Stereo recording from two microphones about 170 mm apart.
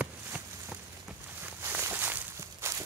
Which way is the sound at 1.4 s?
10° right (ahead or behind).